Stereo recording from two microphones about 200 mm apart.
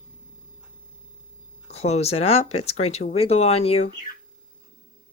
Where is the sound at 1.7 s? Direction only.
30° left (ahead or behind).